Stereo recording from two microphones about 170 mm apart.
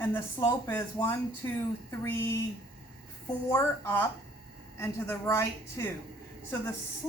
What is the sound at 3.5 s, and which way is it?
A woman's voice, 15° left (ahead or behind).